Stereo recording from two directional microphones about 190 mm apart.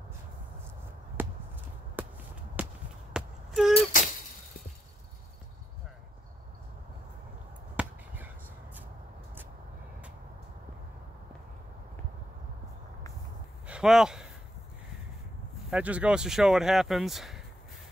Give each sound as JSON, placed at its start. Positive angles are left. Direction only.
{"t": 1.2, "sound": "chop", "side_deg": -10}
{"t": 2.0, "sound": "basketball bounce", "side_deg": -10}
{"t": 2.6, "sound": "a sound", "side_deg": -10}
{"t": 3.7, "sound": "a sound", "side_deg": 45}
{"t": 7.8, "sound": "basketball bounce", "side_deg": -5}
{"t": 13.7, "sound": "speech", "side_deg": -5}
{"t": 15.7, "sound": "speech", "side_deg": -5}